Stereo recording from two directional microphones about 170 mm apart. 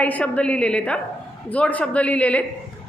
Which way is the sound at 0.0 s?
10° left (ahead or behind).